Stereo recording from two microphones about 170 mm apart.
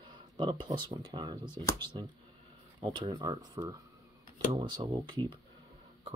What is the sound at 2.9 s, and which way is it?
Speech, 25° right (ahead or behind).